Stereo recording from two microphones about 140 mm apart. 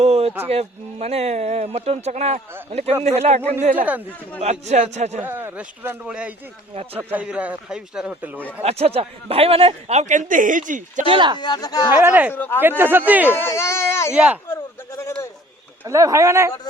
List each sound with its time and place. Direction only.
0.0 s a sound: 45° right (ahead or behind)
0.4 s speech: 45° right (ahead or behind)
3.8 s a man's voice: 10° right (ahead or behind)
4.6 s speech: 55° right (ahead or behind)
5.2 s a man's voice: 15° right (ahead or behind)
8.6 s speech: 45° right (ahead or behind); by 11.0 s 65° right (ahead or behind)
11.1 s speech: 35° right (ahead or behind)
11.3 s speech: 30° left (ahead or behind)
12.0 s a man's voice: 10° right (ahead or behind)
12.3 s speech: 15° left (ahead or behind)
12.5 s a man's voice: 15° right (ahead or behind)
13.3 s speech: 20° left (ahead or behind)
14.4 s bleat: 20° left (ahead or behind)
15.8 s speech: 20° right (ahead or behind)